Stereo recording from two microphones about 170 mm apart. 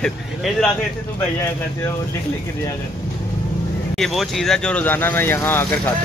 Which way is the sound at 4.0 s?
Centre (ahead or behind).